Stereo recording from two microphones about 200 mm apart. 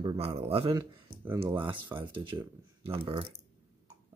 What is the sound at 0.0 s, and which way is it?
Speech, 25° right (ahead or behind).